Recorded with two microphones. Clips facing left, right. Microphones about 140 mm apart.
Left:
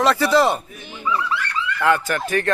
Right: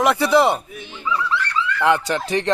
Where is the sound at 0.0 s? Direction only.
15° right (ahead or behind).